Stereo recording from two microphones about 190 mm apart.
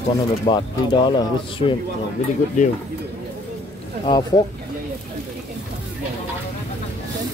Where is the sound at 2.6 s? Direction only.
40° left (ahead or behind).